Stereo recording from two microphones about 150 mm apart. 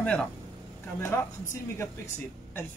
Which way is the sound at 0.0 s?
10° left (ahead or behind).